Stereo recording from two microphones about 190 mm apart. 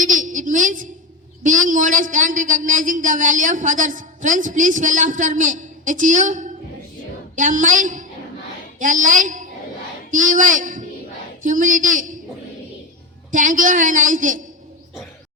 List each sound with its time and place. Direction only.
0.0 s a woman's voice: 40° right (ahead or behind)
13.3 s speech: 45° right (ahead or behind)